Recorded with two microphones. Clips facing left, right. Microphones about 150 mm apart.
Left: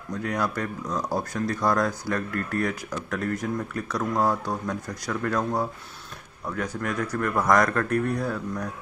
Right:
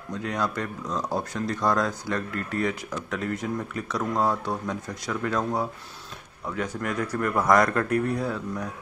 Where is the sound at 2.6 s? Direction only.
Centre (ahead or behind).